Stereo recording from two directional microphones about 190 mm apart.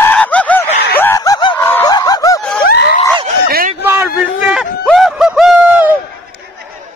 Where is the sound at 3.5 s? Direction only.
50° right (ahead or behind).